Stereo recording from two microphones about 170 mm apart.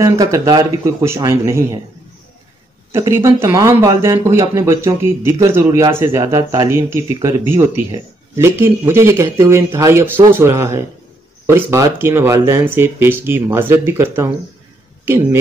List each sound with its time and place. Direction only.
0.0 s speech: 20° right (ahead or behind)
2.9 s speech: 15° right (ahead or behind)